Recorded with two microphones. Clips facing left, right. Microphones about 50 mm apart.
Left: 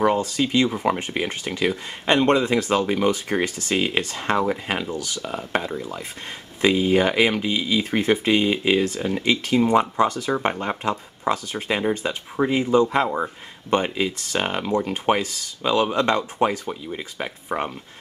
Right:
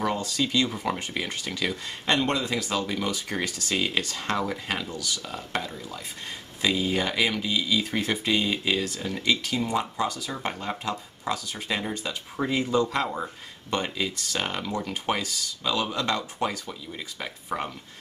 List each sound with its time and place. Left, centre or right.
0.0 s speech: left